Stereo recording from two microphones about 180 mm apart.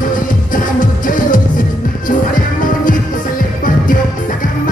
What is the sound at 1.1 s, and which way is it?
Music, 50° left (ahead or behind).